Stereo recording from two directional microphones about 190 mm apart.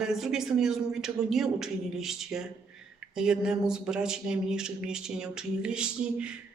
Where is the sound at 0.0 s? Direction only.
5° right (ahead or behind).